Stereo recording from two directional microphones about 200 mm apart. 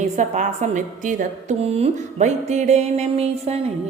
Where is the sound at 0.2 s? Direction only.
35° right (ahead or behind).